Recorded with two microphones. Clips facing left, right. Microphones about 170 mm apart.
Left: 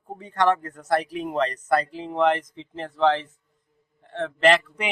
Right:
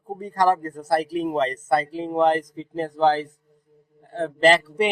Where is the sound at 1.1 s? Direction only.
35° right (ahead or behind).